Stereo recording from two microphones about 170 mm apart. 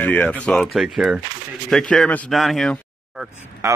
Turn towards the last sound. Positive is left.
turn(degrees=-20)  # may be behind; listen again after turning